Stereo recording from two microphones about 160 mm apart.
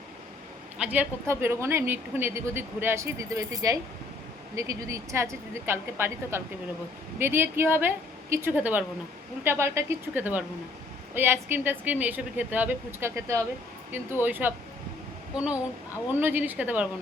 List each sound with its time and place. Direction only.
0.8 s a woman's voice: 10° right (ahead or behind)
16.2 s a woman's voice: 10° right (ahead or behind)